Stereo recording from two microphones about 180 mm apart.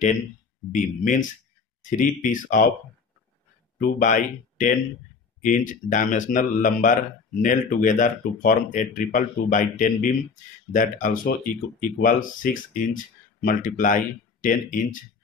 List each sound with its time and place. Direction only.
0.7 s speech: 45° left (ahead or behind)
3.7 s speech: 45° left (ahead or behind)